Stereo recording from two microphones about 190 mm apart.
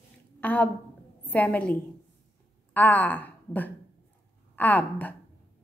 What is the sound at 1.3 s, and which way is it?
A woman's voice, 10° left (ahead or behind).